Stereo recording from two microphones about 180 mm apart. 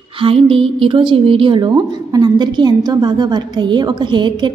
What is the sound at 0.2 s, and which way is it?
A woman's voice, 30° right (ahead or behind).